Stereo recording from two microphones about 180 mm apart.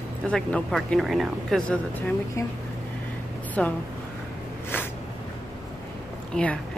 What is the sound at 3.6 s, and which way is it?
Speech, 5° left (ahead or behind).